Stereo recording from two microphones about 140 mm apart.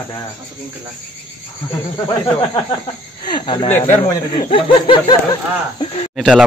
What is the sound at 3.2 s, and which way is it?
Speech, 35° left (ahead or behind).